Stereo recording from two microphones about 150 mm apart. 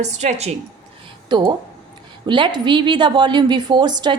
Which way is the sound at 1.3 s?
30° right (ahead or behind).